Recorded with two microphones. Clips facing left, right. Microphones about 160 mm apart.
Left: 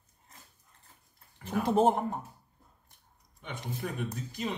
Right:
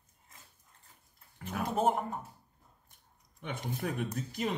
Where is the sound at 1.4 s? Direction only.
30° left (ahead or behind).